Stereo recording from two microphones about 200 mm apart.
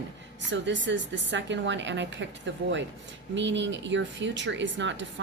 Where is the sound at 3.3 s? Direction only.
65° right (ahead or behind).